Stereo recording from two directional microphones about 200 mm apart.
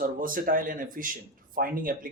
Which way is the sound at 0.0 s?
45° right (ahead or behind).